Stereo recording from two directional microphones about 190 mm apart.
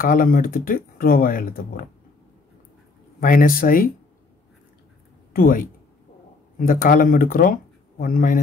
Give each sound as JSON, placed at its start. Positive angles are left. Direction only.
{"t": 0.0, "sound": "speech", "side_deg": 45}
{"t": 3.2, "sound": "speech", "side_deg": 45}
{"t": 5.3, "sound": "speech", "side_deg": 45}